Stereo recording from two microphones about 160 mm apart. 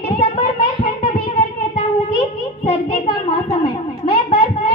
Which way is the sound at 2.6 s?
30° left (ahead or behind).